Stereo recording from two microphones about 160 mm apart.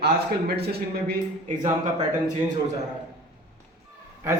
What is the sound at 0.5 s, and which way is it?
Speech, 80° right.